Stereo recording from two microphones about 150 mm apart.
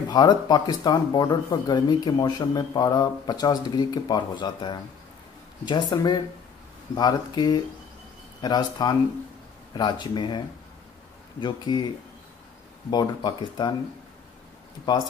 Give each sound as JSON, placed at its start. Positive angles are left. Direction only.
{"t": 0.1, "sound": "speech", "side_deg": 30}
{"t": 11.4, "sound": "speech", "side_deg": 30}
{"t": 12.9, "sound": "speech", "side_deg": 30}